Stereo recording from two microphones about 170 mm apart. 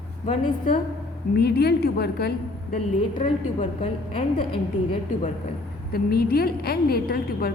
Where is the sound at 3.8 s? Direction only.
35° left (ahead or behind).